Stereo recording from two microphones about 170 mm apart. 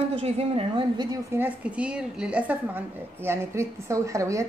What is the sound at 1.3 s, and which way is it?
A woman's voice, 10° right (ahead or behind).